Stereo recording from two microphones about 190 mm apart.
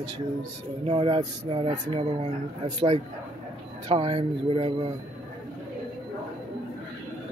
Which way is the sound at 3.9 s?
30° right (ahead or behind).